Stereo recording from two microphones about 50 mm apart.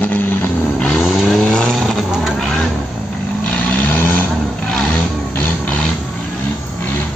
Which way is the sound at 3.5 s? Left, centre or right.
Left.